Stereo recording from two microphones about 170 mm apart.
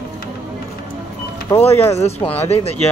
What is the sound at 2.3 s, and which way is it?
Speech, 35° left (ahead or behind).